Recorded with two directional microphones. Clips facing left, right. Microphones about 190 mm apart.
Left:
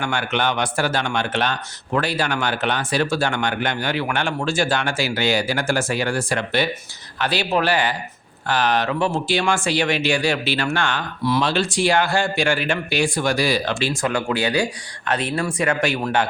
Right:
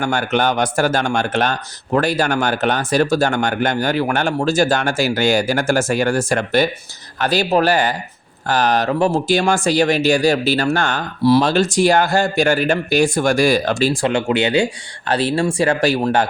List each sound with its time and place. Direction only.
0.0 s a man's voice: 40° right (ahead or behind)